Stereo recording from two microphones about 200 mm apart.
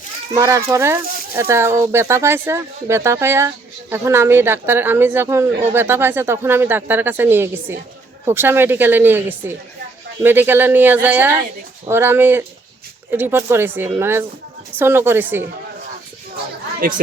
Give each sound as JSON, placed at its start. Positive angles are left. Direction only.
{"t": 0.3, "sound": "speech", "side_deg": -15}
{"t": 16.8, "sound": "speech", "side_deg": -45}